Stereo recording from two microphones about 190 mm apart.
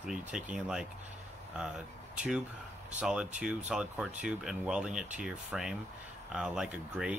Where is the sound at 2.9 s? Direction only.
5° right (ahead or behind).